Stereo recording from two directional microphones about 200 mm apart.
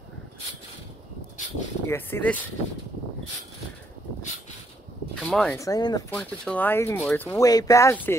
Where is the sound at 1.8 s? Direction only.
10° left (ahead or behind).